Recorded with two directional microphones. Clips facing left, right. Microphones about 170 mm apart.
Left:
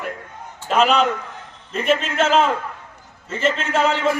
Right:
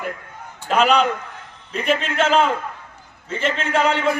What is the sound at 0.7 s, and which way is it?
A man's voice, centre (ahead or behind).